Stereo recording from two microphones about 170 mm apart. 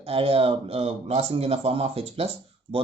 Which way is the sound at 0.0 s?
35° right (ahead or behind).